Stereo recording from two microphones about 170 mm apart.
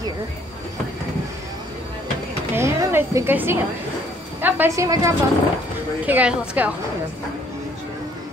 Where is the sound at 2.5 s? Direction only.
15° right (ahead or behind).